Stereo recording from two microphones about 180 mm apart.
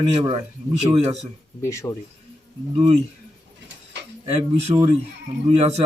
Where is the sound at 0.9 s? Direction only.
35° right (ahead or behind).